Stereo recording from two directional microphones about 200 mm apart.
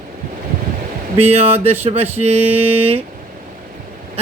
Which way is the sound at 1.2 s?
30° right (ahead or behind).